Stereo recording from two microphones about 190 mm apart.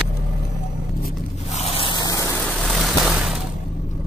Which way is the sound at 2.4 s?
Centre (ahead or behind).